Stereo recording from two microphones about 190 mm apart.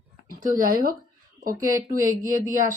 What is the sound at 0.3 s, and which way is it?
Speech, 50° right (ahead or behind).